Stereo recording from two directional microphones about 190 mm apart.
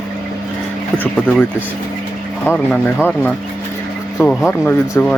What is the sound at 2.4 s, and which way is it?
Speech, 5° left (ahead or behind).